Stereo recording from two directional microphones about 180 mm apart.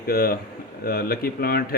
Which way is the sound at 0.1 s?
55° left (ahead or behind).